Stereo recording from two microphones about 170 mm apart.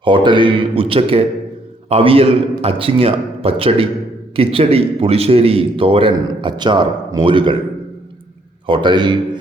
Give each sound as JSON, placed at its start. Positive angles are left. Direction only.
{"t": 0.0, "sound": "a man's voice", "side_deg": -30}
{"t": 8.6, "sound": "a man's voice", "side_deg": -30}